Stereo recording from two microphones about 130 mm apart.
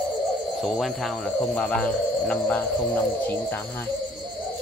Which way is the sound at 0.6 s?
Centre (ahead or behind).